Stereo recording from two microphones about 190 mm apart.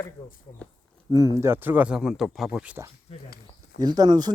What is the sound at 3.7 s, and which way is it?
Speech, 20° right (ahead or behind).